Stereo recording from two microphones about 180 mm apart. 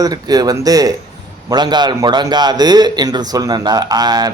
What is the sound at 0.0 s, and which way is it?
A man's voice, 20° right (ahead or behind).